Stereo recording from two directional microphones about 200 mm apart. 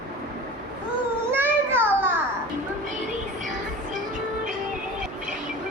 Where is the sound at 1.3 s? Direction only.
10° right (ahead or behind).